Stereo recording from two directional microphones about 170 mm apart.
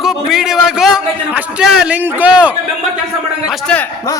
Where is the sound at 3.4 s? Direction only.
5° left (ahead or behind).